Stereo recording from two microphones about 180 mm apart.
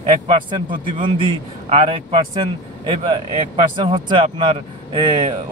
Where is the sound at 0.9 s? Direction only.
30° right (ahead or behind).